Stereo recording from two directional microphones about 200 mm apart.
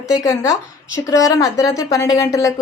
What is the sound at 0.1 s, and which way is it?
Speech, 15° left (ahead or behind).